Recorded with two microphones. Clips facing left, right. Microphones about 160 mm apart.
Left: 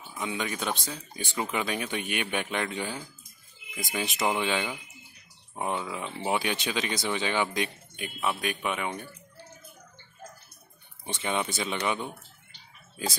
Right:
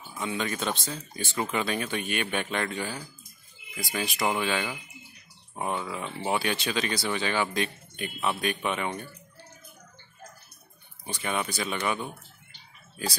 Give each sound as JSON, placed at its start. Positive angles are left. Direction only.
{"t": 0.2, "sound": "speech", "side_deg": 10}
{"t": 11.1, "sound": "speech", "side_deg": 20}